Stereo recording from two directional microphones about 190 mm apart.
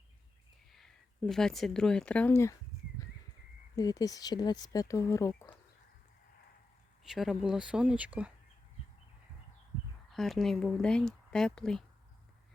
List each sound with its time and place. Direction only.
0.7 s speech: centre (ahead or behind)
3.8 s speech: 20° left (ahead or behind)
7.0 s speech: centre (ahead or behind)
10.1 s speech: centre (ahead or behind)